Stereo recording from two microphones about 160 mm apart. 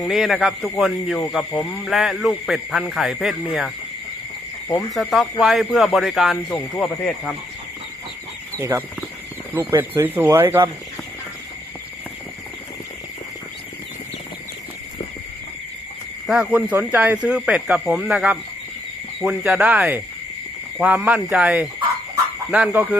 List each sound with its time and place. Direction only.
0.0 s speech: centre (ahead or behind)
4.9 s speech: centre (ahead or behind)
8.5 s speech: 20° right (ahead or behind)
16.2 s speech: 5° right (ahead or behind)